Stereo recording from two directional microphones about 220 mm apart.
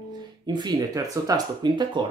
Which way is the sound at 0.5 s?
20° right (ahead or behind).